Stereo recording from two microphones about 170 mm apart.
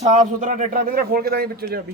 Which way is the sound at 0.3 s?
50° right (ahead or behind).